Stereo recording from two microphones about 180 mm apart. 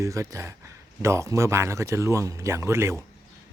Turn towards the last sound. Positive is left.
turn(degrees=-15)  # may be behind; listen again after turning